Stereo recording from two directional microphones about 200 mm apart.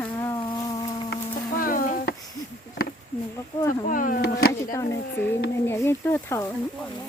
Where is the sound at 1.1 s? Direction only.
45° left (ahead or behind).